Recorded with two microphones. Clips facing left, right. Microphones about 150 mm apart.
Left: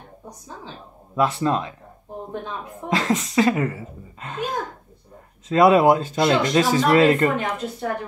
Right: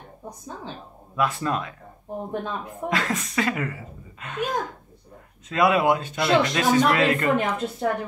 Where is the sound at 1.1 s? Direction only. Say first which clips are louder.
Left 4 dB; 25° left (ahead or behind).